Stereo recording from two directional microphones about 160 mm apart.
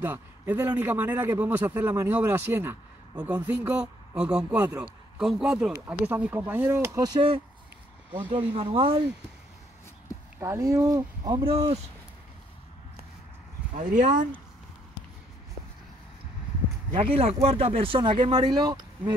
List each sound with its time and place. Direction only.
0.0 s a man's voice: 10° right (ahead or behind); by 9.0 s 35° right (ahead or behind)
10.4 s speech: 20° right (ahead or behind)
11.4 s speech: 35° right (ahead or behind)
13.7 s speech: 55° right (ahead or behind)
16.9 s speech: 35° right (ahead or behind)